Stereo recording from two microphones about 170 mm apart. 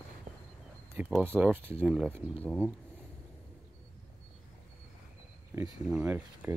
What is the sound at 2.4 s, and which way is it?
Speech, 10° left (ahead or behind).